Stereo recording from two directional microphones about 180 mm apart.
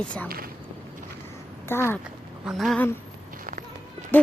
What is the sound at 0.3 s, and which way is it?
Speech, 55° right (ahead or behind).